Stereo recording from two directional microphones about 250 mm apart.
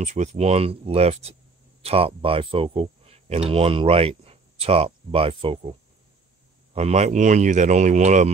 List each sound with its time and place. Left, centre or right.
0.0 s speech: right